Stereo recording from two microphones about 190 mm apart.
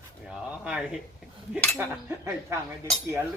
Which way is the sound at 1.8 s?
10° right (ahead or behind).